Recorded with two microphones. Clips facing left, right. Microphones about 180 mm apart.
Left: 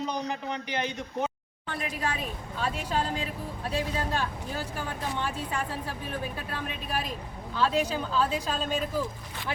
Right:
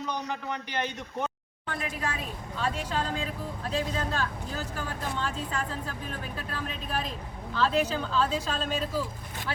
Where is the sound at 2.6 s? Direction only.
10° left (ahead or behind).